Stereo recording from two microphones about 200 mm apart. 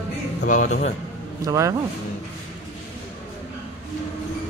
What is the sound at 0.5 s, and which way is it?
Speech, 40° left (ahead or behind).